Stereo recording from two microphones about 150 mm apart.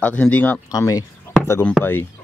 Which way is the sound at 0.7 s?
20° left (ahead or behind).